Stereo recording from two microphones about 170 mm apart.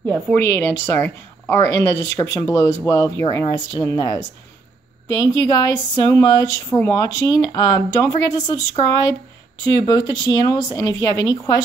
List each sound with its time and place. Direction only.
0.0 s speech: 10° left (ahead or behind)
9.8 s speech: 25° left (ahead or behind)